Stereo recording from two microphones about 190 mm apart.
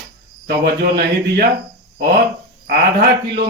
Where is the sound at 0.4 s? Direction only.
55° right (ahead or behind).